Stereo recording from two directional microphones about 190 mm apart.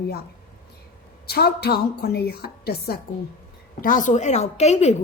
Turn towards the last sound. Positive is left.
turn(degrees=35)  # may be behind; listen again after turning